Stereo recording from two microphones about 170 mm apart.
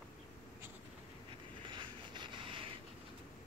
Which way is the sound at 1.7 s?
25° right (ahead or behind).